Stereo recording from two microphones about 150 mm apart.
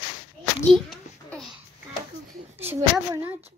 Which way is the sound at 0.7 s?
Centre (ahead or behind).